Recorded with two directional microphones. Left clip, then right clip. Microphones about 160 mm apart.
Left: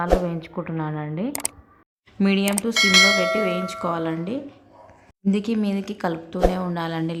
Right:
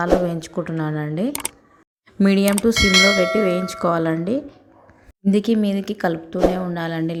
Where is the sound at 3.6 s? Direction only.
30° right (ahead or behind).